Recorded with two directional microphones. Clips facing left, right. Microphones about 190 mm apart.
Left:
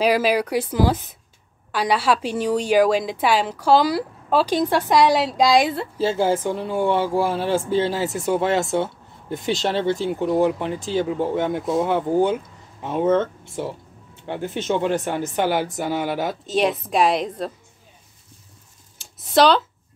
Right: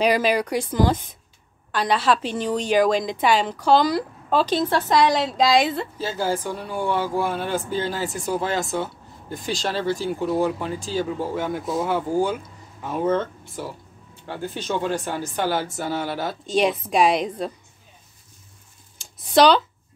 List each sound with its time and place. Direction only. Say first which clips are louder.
0.0 s a woman's voice: left 1 dB; 5° left (ahead or behind)
5.9 s speech: left 9 dB; 25° left (ahead or behind)
16.4 s a woman's voice: right 1 dB; centre (ahead or behind)
18.9 s a sound: even; centre (ahead or behind)